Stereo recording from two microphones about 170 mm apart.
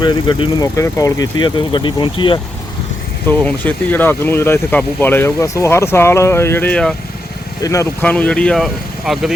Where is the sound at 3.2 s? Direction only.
10° left (ahead or behind).